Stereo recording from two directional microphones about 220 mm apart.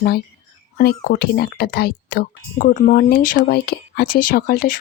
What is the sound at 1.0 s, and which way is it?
Speech, 45° left (ahead or behind).